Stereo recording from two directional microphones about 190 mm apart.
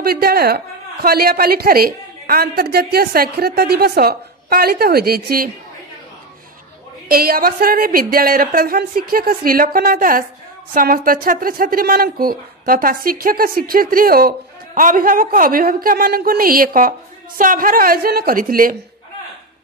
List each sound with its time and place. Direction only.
0.0 s speech: 50° right (ahead or behind)
7.1 s speech: 50° right (ahead or behind)